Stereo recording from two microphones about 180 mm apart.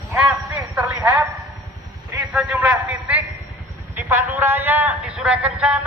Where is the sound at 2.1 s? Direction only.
10° right (ahead or behind).